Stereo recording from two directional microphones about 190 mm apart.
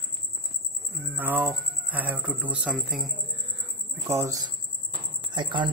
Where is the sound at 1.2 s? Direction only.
10° right (ahead or behind).